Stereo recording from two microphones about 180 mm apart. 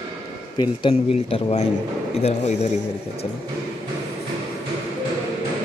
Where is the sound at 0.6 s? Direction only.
30° left (ahead or behind).